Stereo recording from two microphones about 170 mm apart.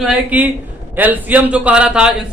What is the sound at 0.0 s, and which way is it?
A man's voice, 5° right (ahead or behind).